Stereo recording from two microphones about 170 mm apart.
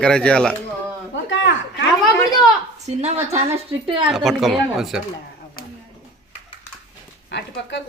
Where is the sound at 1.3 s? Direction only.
90° left.